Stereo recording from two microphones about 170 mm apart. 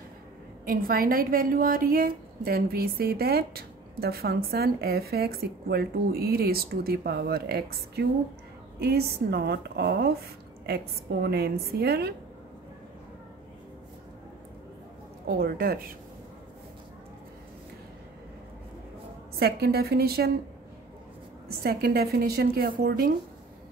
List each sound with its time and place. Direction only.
0.7 s a woman's voice: 60° right (ahead or behind)
15.2 s a woman's voice: 65° right (ahead or behind)
19.3 s a woman's voice: 65° right (ahead or behind)
21.6 s a woman's voice: 65° right (ahead or behind)